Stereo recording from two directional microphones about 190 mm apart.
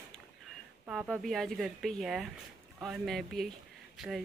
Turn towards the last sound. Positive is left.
turn(degrees=0)  # may be behind; listen again after turning